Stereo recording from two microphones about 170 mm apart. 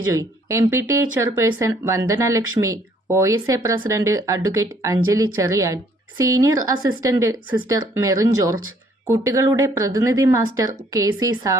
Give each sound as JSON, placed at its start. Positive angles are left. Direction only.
{"t": 0.2, "sound": "speech", "side_deg": -15}